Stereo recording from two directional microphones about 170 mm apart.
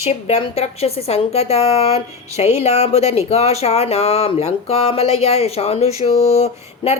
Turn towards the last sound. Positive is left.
turn(degrees=40)  # may be behind; listen again after turning